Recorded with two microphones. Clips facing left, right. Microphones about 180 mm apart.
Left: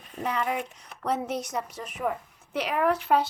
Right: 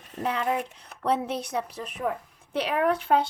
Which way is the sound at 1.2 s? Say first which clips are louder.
Even; 30° right (ahead or behind).